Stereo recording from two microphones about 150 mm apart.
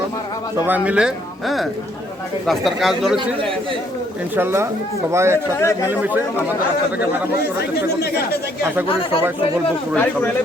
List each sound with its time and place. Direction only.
0.7 s speech: 10° right (ahead or behind)
4.4 s speech: 15° right (ahead or behind)
5.5 s speech: 20° left (ahead or behind)
5.9 s speech: 10° right (ahead or behind)
9.9 s speech: 10° left (ahead or behind)